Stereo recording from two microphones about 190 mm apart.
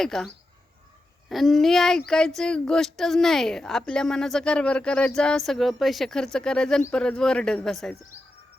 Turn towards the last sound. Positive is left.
turn(degrees=0)  # may be behind; listen again after turning